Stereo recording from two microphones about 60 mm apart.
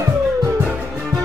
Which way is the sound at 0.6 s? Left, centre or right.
Right.